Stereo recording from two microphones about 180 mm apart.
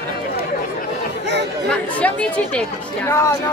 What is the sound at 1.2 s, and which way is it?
Chatter, 75° right (ahead or behind).